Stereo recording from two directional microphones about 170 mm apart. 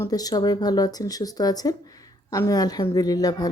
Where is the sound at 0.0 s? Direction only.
20° left (ahead or behind).